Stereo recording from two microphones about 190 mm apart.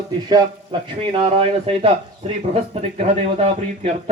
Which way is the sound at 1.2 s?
30° right (ahead or behind).